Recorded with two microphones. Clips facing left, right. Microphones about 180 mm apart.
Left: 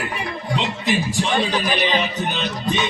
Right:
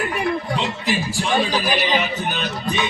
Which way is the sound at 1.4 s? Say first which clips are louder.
Right 3 dB; 5° right (ahead or behind).